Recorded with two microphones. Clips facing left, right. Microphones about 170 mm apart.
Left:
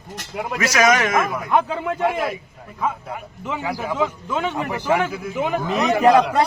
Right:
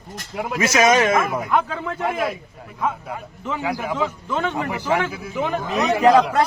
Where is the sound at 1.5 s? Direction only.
15° left (ahead or behind).